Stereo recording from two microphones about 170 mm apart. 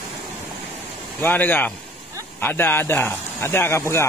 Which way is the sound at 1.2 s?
10° left (ahead or behind).